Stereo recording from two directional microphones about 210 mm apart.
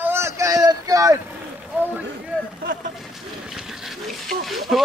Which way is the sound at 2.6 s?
40° right (ahead or behind).